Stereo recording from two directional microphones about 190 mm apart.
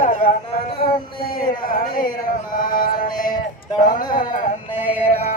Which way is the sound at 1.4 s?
50° left (ahead or behind).